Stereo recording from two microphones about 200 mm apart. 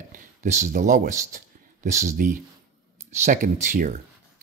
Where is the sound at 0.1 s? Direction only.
40° right (ahead or behind).